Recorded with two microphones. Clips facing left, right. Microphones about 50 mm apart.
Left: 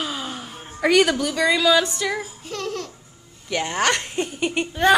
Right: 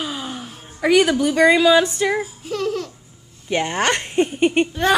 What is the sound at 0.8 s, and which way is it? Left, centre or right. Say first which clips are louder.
Speech: right 2 dB; centre.